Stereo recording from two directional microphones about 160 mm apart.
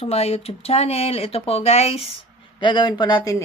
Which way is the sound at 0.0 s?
40° left (ahead or behind).